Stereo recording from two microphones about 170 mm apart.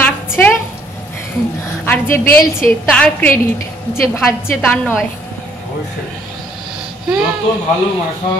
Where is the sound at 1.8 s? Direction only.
10° left (ahead or behind).